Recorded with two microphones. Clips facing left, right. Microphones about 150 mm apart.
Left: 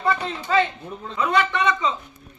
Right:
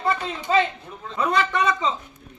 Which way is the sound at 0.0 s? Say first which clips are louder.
Left 1 dB; 20° right (ahead or behind).